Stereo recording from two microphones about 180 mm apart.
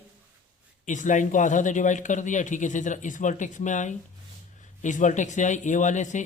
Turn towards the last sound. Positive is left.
turn(degrees=40)  # may be behind; listen again after turning